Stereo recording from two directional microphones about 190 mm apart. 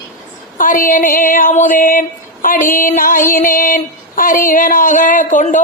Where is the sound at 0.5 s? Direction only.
45° left (ahead or behind).